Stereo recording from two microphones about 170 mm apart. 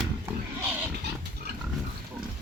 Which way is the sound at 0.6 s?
10° right (ahead or behind).